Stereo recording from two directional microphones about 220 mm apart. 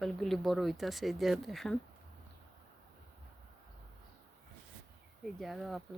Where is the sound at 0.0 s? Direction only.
Centre (ahead or behind).